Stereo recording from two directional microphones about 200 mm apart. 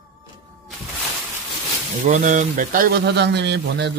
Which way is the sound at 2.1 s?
40° right (ahead or behind).